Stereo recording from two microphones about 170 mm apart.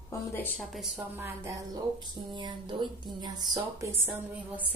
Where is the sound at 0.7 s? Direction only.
Centre (ahead or behind).